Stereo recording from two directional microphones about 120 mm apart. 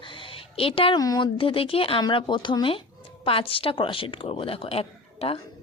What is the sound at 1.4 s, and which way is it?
A woman's voice, 50° left (ahead or behind).